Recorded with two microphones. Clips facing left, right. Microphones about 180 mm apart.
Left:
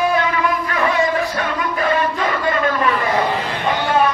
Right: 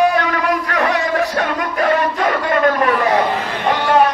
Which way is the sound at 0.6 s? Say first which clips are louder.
Right 1 dB; 70° right (ahead or behind).